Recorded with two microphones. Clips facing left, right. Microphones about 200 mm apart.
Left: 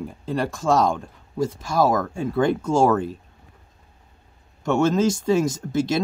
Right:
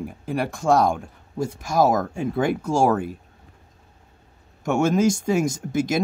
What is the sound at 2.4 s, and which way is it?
Speech, 10° right (ahead or behind).